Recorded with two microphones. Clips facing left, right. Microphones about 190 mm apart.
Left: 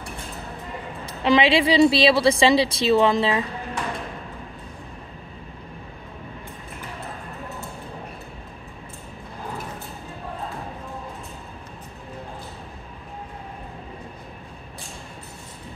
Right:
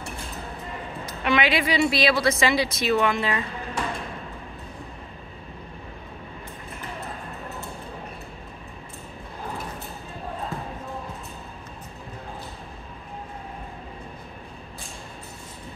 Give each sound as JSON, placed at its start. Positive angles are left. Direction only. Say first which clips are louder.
{"t": 1.0, "sound": "a woman's voice", "louder": "left 5 dB", "side_deg": 30}